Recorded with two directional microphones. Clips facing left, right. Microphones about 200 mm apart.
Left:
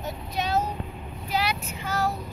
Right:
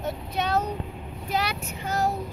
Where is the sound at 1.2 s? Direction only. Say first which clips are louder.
Left 1 dB; 45° right (ahead or behind).